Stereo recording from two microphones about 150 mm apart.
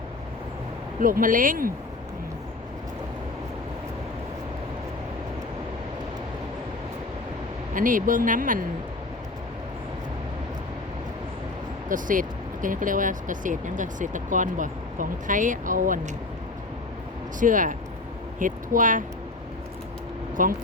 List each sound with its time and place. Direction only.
0.9 s speech: 65° right (ahead or behind)
7.7 s speech: 60° right (ahead or behind)
11.9 s speech: 60° right (ahead or behind)
17.4 s speech: 60° right (ahead or behind)
20.4 s speech: 65° right (ahead or behind)